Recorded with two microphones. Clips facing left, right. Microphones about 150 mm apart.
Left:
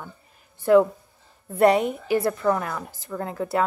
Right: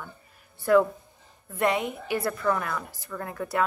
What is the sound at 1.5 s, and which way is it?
Speech, 40° left (ahead or behind).